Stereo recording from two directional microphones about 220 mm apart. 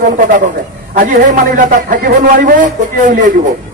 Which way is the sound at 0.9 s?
40° right (ahead or behind).